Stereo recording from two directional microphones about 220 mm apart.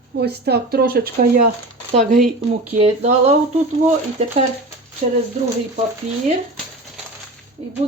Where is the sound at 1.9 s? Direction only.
30° right (ahead or behind).